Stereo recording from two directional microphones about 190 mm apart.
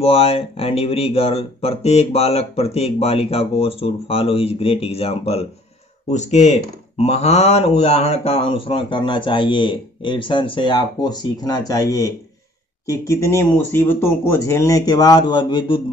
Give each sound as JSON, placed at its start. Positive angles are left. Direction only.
{"t": 0.0, "sound": "speech", "side_deg": 30}